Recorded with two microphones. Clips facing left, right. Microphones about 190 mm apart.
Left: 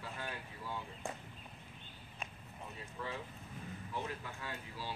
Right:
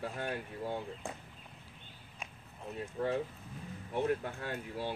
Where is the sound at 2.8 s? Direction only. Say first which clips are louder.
Right 11 dB; 60° right (ahead or behind).